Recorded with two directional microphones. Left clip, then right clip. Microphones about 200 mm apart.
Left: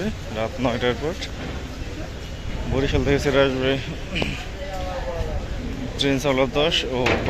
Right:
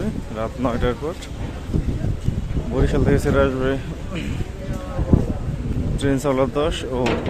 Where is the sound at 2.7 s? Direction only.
20° right (ahead or behind).